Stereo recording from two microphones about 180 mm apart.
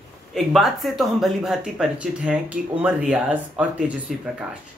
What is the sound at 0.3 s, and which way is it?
Speech, centre (ahead or behind).